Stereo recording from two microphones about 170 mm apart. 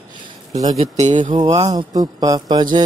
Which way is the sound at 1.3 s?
25° right (ahead or behind).